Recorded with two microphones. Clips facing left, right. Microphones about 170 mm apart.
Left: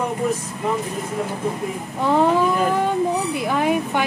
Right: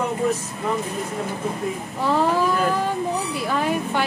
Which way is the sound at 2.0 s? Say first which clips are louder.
Left 3 dB; 20° left (ahead or behind).